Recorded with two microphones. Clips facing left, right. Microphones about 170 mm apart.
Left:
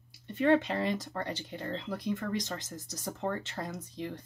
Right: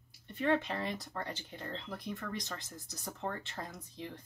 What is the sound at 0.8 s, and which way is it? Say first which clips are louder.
Speech: left 6 dB; 90° left.